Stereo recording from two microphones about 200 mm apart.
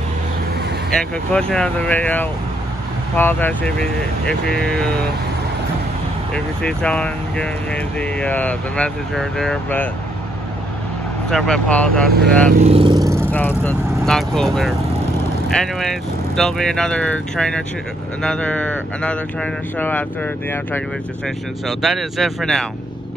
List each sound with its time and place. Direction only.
1.5 s speech: 5° left (ahead or behind)
6.3 s speech: 5° left (ahead or behind)
11.2 s speech: 5° left (ahead or behind)
12.6 s speech: 25° right (ahead or behind)
13.3 s speech: 10° left (ahead or behind)
21.6 s speech: centre (ahead or behind)